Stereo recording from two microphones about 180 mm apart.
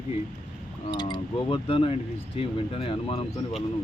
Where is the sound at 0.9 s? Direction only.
25° left (ahead or behind).